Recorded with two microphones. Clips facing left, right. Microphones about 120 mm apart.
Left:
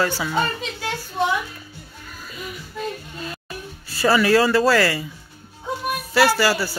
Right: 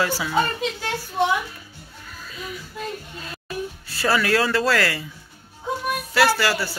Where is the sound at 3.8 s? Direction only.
5° left (ahead or behind).